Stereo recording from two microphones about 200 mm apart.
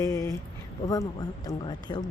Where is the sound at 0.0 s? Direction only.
15° left (ahead or behind).